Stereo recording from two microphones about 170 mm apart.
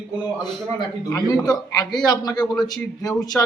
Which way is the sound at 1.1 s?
25° left (ahead or behind).